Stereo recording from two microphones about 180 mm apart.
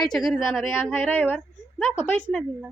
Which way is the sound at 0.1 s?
Centre (ahead or behind).